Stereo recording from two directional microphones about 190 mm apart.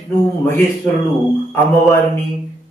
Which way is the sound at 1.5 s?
Centre (ahead or behind).